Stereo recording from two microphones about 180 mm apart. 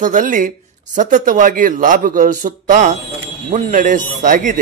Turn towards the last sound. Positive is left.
turn(degrees=-45)  # may be behind; listen again after turning